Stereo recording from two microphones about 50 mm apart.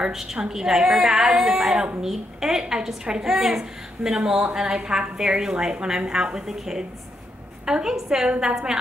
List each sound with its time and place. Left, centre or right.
0.1 s a woman's voice: centre